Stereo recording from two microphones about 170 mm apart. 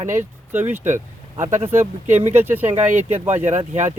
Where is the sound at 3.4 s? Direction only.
40° right (ahead or behind).